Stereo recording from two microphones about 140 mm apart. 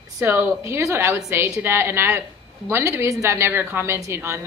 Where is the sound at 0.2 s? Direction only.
15° right (ahead or behind).